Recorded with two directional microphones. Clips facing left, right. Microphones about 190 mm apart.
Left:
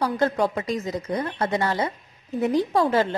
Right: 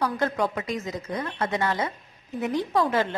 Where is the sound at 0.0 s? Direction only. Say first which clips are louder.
Left 3 dB; 30° left (ahead or behind).